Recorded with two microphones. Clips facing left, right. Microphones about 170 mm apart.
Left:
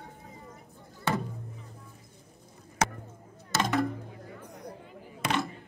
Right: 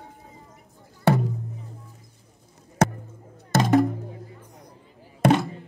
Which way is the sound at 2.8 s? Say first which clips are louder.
Right 8 dB; 55° right (ahead or behind).